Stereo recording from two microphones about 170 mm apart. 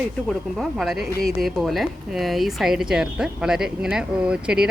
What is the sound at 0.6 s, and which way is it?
A woman's voice, centre (ahead or behind).